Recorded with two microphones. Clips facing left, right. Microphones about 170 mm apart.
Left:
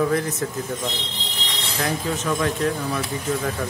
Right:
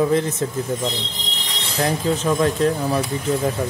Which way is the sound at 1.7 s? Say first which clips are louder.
Right 5 dB; 35° right (ahead or behind).